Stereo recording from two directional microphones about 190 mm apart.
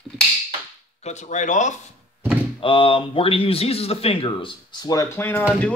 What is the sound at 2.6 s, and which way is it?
Speech, 30° left (ahead or behind).